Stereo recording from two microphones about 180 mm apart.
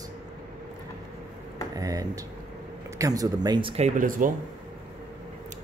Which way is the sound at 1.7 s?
20° right (ahead or behind).